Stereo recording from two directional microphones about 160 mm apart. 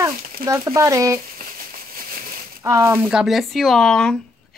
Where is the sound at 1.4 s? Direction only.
65° right (ahead or behind).